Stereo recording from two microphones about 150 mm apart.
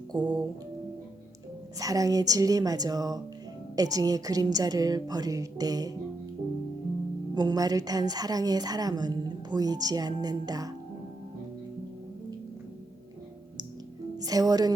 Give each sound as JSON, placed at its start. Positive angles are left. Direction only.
{"t": 0.1, "sound": "a woman's voice", "side_deg": -25}
{"t": 1.8, "sound": "a woman's voice", "side_deg": -25}
{"t": 7.3, "sound": "a woman's voice", "side_deg": -25}
{"t": 14.2, "sound": "speech", "side_deg": -25}